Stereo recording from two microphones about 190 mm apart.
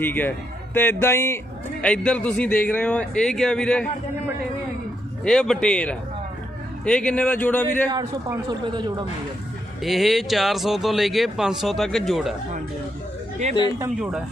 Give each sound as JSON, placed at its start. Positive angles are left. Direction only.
{"t": 0.0, "sound": "a man's voice", "side_deg": 10}
{"t": 5.2, "sound": "a man's voice", "side_deg": 5}
{"t": 7.9, "sound": "a man's voice", "side_deg": -15}
{"t": 9.8, "sound": "a man's voice", "side_deg": 0}
{"t": 13.9, "sound": "a man's voice", "side_deg": -5}